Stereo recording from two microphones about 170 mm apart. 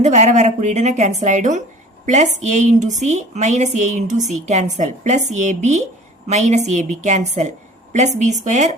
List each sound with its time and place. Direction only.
0.0 s a woman's voice: 45° right (ahead or behind)